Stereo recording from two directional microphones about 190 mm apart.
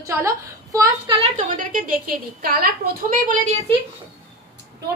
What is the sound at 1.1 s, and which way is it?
Speech, 30° right (ahead or behind).